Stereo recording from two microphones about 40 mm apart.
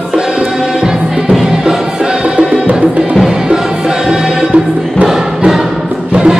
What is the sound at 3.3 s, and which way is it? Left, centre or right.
Music, centre.